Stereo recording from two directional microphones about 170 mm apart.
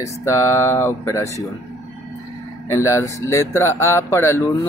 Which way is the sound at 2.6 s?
15° left (ahead or behind).